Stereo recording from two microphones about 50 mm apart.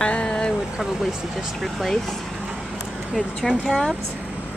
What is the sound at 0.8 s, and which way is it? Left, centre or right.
Speech, centre.